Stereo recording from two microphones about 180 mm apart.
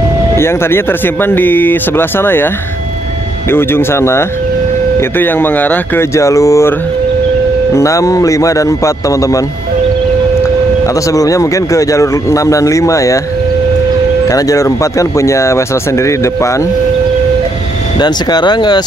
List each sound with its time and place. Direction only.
0.4 s speech: 15° left (ahead or behind)
7.7 s speech: 15° left (ahead or behind)
11.1 s speech: 20° left (ahead or behind)
14.3 s speech: 20° left (ahead or behind)
17.9 s speech: 25° left (ahead or behind)